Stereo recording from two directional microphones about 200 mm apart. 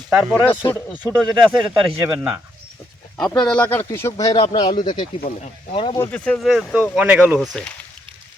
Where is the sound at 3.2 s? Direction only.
Centre (ahead or behind); by 6.0 s 25° left (ahead or behind).